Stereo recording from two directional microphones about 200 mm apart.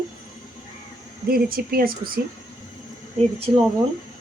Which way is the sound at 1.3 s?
50° right (ahead or behind).